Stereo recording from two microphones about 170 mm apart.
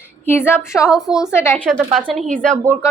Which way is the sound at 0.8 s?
Centre (ahead or behind).